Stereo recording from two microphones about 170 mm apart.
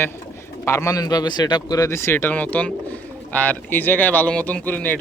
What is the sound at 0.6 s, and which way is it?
Speech, 15° left (ahead or behind).